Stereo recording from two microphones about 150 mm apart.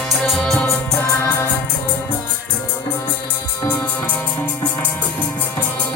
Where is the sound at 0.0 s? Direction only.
Centre (ahead or behind).